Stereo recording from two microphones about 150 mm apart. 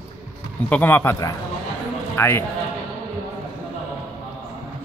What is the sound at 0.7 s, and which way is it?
A man's voice, 10° left (ahead or behind).